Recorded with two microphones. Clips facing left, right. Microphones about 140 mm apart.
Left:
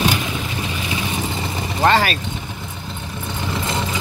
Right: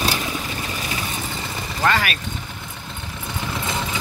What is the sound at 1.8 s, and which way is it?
Vehicle, 30° left (ahead or behind).